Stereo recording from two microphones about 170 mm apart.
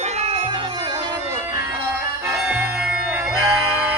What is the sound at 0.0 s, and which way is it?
Music, 40° right (ahead or behind).